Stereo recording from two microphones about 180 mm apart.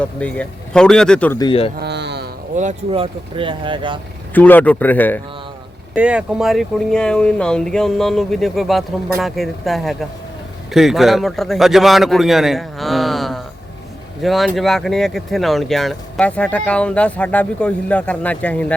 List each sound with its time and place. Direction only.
0.0 s speech: 5° left (ahead or behind)
1.4 s speech: 30° left (ahead or behind)
1.8 s a sound: 70° right (ahead or behind)
2.6 s speech: 35° right (ahead or behind)
4.4 s speech: 10° left (ahead or behind)
5.9 s speech: 5° right (ahead or behind)